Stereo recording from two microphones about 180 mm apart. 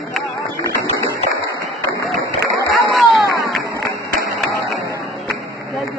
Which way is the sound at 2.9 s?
Centre (ahead or behind).